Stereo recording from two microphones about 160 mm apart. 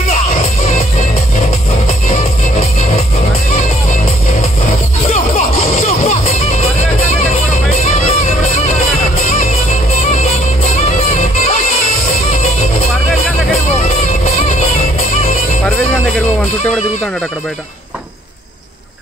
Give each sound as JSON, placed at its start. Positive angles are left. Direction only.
{"t": 3.5, "sound": "music", "side_deg": 50}
{"t": 7.7, "sound": "music", "side_deg": 45}
{"t": 13.8, "sound": "music", "side_deg": 40}